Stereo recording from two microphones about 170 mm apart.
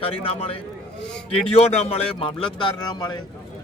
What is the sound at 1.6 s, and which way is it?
A man's voice, 40° left (ahead or behind).